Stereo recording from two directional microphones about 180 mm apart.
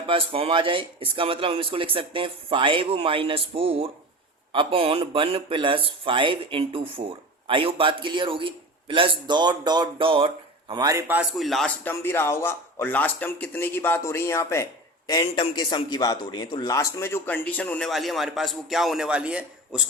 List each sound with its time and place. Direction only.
0.1 s speech: 30° right (ahead or behind)
11.2 s a man's voice: centre (ahead or behind)